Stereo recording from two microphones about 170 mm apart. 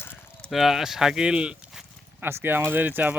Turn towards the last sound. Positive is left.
turn(degrees=-10)  # may be behind; listen again after turning